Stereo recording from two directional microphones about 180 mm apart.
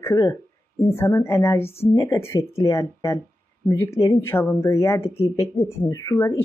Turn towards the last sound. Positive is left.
turn(degrees=15)  # may be behind; listen again after turning